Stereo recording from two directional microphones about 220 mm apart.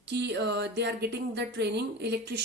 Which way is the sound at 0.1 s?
50° right (ahead or behind).